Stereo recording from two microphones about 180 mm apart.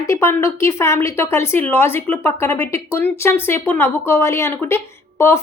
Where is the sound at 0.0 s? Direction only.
15° left (ahead or behind).